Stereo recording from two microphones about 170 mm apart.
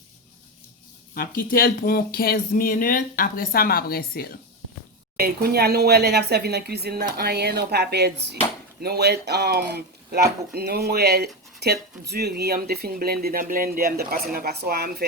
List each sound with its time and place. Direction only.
1.4 s speech: 60° left (ahead or behind)
5.1 s speech: 70° right (ahead or behind)